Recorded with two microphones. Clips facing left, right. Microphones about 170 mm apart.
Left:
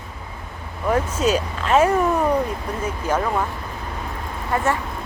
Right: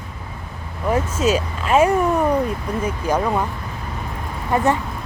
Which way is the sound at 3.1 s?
10° right (ahead or behind).